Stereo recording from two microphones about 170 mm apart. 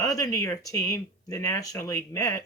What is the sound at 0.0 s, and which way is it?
Speech, 20° left (ahead or behind).